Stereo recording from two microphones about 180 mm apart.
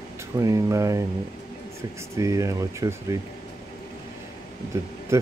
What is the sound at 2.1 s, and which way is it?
Speech, 15° right (ahead or behind).